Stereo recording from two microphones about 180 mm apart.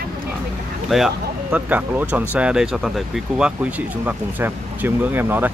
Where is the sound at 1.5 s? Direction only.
10° right (ahead or behind).